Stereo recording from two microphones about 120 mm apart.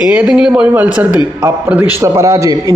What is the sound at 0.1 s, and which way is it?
A man's voice, 10° right (ahead or behind).